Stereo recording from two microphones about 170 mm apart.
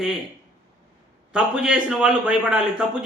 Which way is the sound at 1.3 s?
5° right (ahead or behind).